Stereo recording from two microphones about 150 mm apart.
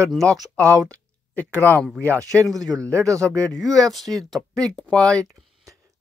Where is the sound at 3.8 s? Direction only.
Centre (ahead or behind).